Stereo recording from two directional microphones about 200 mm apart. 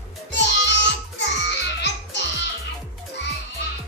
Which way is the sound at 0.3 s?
60° left (ahead or behind).